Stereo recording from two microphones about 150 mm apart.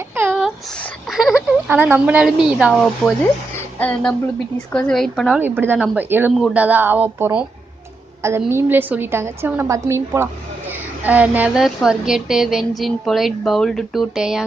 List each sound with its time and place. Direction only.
0.1 s a sound: 10° right (ahead or behind)
1.1 s speech: 5° right (ahead or behind)
3.5 s music: 10° left (ahead or behind)
4.6 s speech: 5° left (ahead or behind)
5.4 s a woman's voice: 15° right (ahead or behind)